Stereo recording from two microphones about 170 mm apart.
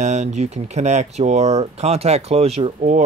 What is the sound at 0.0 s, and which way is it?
Speech, 45° right (ahead or behind).